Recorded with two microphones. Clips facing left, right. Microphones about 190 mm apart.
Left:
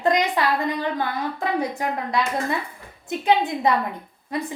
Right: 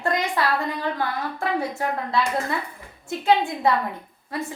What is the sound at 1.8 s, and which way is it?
A woman's voice, 15° left (ahead or behind).